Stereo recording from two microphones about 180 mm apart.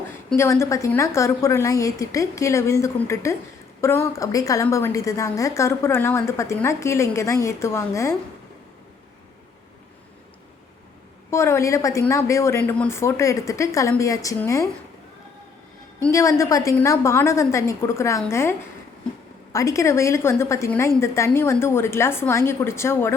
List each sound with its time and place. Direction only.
0.3 s a woman's voice: 15° left (ahead or behind)
11.3 s a woman's voice: 15° left (ahead or behind)
16.1 s a woman's voice: 15° left (ahead or behind)
19.5 s a woman's voice: 15° left (ahead or behind)